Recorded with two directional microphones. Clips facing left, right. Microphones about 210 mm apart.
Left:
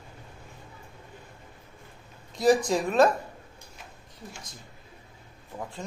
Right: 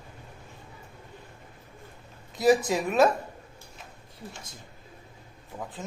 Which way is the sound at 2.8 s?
5° right (ahead or behind).